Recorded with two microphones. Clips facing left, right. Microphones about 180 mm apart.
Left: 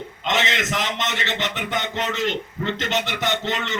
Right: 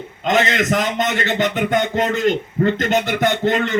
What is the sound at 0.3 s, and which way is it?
A man's voice, 50° right (ahead or behind).